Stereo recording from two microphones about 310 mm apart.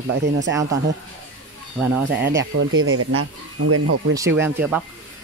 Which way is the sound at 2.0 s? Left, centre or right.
Right.